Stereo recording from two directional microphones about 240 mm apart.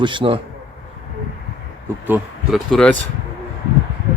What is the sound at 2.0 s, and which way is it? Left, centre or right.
Speech, centre.